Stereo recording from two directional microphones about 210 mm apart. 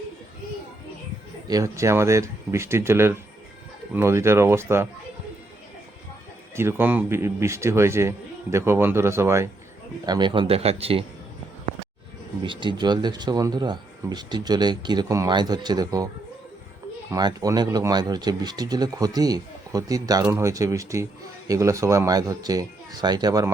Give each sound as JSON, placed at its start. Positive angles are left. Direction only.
{"t": 1.5, "sound": "speech", "side_deg": -15}
{"t": 6.6, "sound": "speech", "side_deg": -10}
{"t": 12.4, "sound": "speech", "side_deg": -20}
{"t": 17.1, "sound": "speech", "side_deg": -15}